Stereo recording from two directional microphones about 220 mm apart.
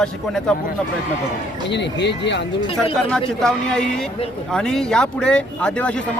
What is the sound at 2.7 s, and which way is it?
A man's voice, centre (ahead or behind).